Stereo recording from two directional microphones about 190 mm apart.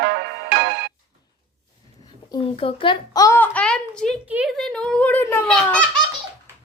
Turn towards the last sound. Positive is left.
turn(degrees=5)  # may be behind; listen again after turning